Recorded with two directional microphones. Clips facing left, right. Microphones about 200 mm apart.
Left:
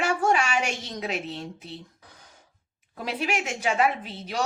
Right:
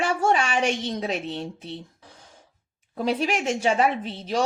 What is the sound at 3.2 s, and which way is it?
A child's voice, 30° right (ahead or behind).